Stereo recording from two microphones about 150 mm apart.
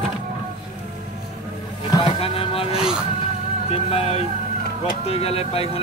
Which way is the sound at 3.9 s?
40° left (ahead or behind).